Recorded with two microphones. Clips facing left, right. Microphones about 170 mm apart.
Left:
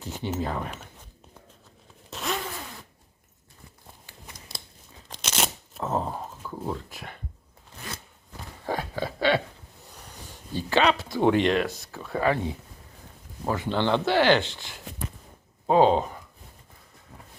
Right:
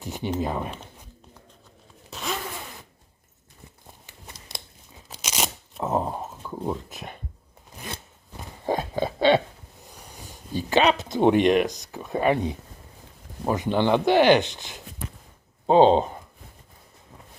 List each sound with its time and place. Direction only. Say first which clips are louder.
0.0 s speech: right 3 dB; 15° right (ahead or behind)
2.0 s zipper: left 1 dB; centre (ahead or behind)
5.0 s shuffling cards: even; 10° right (ahead or behind)
5.8 s dog: right 3 dB; 15° right (ahead or behind)
7.9 s a sound: right 2 dB; 25° right (ahead or behind)
10.1 s speech: right 3 dB; 10° right (ahead or behind); by 16.1 s 25° right (ahead or behind)